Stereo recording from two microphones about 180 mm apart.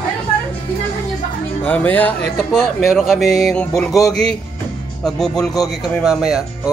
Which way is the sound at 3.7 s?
15° left (ahead or behind).